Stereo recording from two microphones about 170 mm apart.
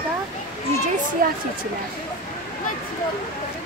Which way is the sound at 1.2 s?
55° right (ahead or behind).